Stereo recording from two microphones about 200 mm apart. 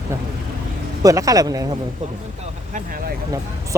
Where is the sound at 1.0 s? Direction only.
15° right (ahead or behind).